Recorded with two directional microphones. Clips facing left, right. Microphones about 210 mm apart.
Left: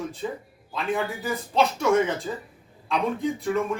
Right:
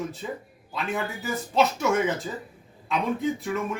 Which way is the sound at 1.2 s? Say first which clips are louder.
Right 3 dB; 5° right (ahead or behind).